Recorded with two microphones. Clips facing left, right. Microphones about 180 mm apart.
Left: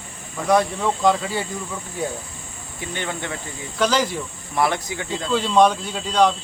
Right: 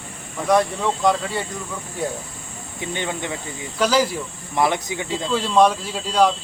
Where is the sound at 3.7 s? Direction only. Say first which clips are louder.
Right 1 dB; 5° right (ahead or behind).